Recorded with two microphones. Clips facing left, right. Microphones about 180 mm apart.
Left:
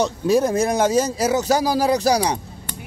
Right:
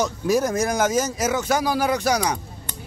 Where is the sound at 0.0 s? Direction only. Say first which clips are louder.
Left 3 dB; 30° left (ahead or behind).